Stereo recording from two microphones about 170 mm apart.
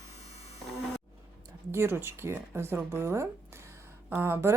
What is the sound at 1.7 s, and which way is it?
Speech, 15° right (ahead or behind).